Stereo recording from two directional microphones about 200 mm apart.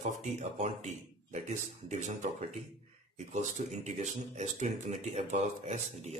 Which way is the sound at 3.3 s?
35° right (ahead or behind).